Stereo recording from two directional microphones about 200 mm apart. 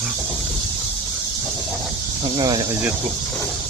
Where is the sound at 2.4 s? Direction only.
20° right (ahead or behind).